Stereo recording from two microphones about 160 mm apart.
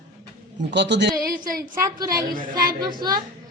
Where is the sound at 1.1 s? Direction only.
20° right (ahead or behind).